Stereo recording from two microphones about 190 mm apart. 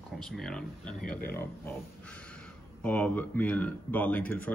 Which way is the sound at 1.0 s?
50° left (ahead or behind).